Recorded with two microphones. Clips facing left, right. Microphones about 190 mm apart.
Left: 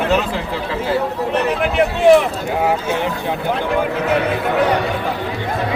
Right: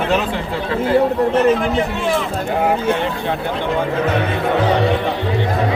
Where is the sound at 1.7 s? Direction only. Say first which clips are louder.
Left 3 dB; 65° left (ahead or behind).